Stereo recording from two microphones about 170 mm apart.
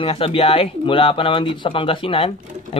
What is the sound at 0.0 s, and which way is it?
Speech, 30° left (ahead or behind).